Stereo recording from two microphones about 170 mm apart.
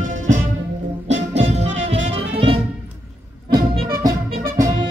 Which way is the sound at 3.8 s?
60° right (ahead or behind).